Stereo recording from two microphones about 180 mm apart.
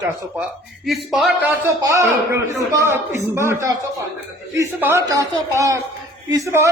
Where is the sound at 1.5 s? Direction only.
15° right (ahead or behind).